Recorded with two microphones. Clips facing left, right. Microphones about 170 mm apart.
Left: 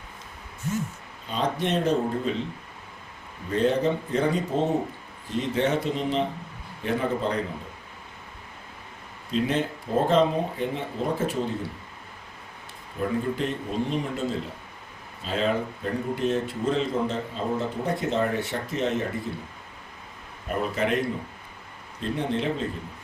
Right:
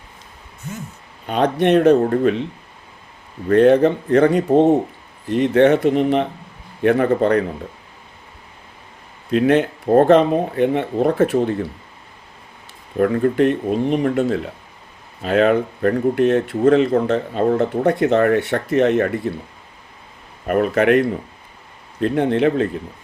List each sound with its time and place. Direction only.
1.3 s speech: 65° right (ahead or behind)
3.5 s speech: 65° right (ahead or behind)
9.3 s speech: 65° right (ahead or behind)
13.0 s a man's voice: 65° right (ahead or behind)
20.5 s a man's voice: 65° right (ahead or behind)
22.0 s speech: 65° right (ahead or behind)